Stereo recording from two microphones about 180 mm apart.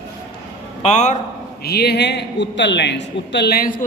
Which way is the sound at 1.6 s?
60° left (ahead or behind).